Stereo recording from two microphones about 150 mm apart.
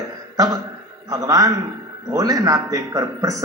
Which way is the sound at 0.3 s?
25° right (ahead or behind).